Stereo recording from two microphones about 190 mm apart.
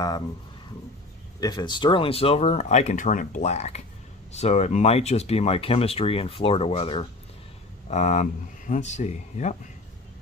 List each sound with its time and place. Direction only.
1.4 s speech: 20° left (ahead or behind); by 9.6 s 35° left (ahead or behind)